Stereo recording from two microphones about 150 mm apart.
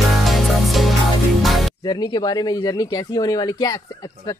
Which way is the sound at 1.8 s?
25° left (ahead or behind).